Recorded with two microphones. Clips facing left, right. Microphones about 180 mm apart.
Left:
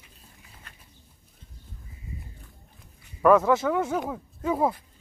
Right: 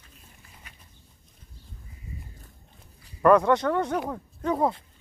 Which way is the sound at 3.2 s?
5° left (ahead or behind).